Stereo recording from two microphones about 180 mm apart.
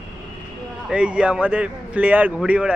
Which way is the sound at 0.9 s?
5° right (ahead or behind).